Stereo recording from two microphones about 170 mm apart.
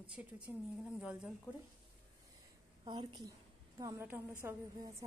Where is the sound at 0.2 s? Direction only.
10° right (ahead or behind).